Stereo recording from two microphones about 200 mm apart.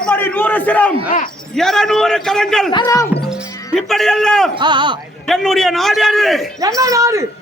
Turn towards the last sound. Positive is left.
turn(degrees=-15)  # may be behind; listen again after turning